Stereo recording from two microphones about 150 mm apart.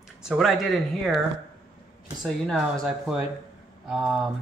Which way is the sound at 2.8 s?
Centre (ahead or behind).